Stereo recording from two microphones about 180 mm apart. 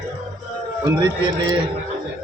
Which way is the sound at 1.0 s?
25° right (ahead or behind).